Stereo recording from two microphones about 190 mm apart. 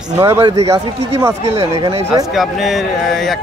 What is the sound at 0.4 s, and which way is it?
Speech, 20° right (ahead or behind).